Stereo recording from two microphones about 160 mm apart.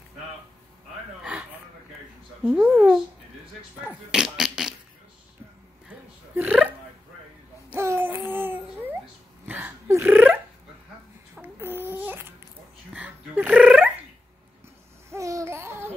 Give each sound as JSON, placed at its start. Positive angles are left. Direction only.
{"t": 1.2, "sound": "a sound", "side_deg": -5}
{"t": 2.4, "sound": "speech", "side_deg": -5}
{"t": 6.3, "sound": "burping", "side_deg": -10}
{"t": 7.7, "sound": "babbling", "side_deg": -15}
{"t": 9.5, "sound": "a sound", "side_deg": -15}
{"t": 11.5, "sound": "babbling", "side_deg": -15}
{"t": 12.9, "sound": "dog", "side_deg": -10}
{"t": 15.0, "sound": "babbling", "side_deg": -20}